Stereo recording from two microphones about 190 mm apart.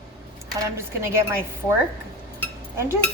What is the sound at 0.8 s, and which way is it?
Speech, 15° right (ahead or behind).